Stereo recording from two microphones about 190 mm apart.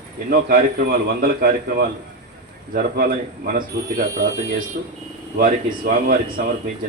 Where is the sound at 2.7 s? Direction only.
50° right (ahead or behind).